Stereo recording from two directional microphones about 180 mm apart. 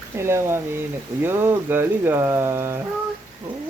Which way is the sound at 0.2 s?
15° right (ahead or behind).